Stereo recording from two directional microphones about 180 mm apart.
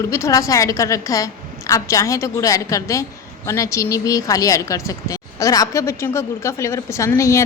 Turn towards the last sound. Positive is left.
turn(degrees=15)  # may be behind; listen again after turning